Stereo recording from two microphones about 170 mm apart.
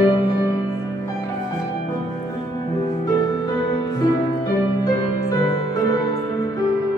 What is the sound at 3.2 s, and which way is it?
Music, 25° left (ahead or behind).